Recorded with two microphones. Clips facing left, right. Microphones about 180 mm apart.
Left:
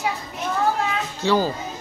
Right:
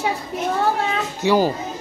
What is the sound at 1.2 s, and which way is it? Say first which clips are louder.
Speech: right 3 dB; 15° right (ahead or behind).